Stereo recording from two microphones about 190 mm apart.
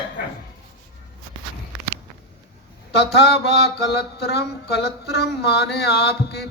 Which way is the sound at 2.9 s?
60° left (ahead or behind).